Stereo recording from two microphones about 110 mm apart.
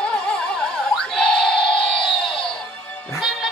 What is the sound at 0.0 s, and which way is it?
Music, 10° left (ahead or behind).